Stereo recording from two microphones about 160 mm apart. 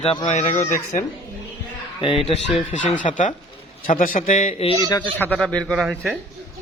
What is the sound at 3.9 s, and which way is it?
Speech, 60° left (ahead or behind).